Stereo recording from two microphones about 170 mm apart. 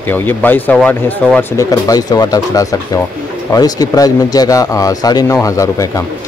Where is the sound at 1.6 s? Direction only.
20° left (ahead or behind).